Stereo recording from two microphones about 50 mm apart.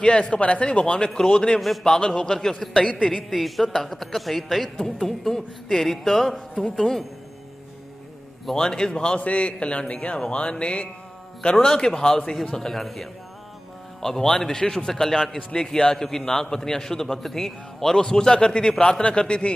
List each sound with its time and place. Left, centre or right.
0.0 s speech: left
1.6 s a man's voice: centre
1.9 s a man's voice: centre
2.8 s a man's voice: centre
3.3 s a man's voice: centre
8.5 s a man's voice: centre
9.2 s speech: left
11.6 s a man's voice: centre